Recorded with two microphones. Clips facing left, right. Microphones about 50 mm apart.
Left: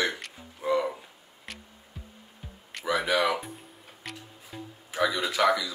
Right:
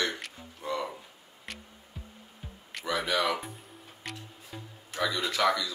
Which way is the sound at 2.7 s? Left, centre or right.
Centre.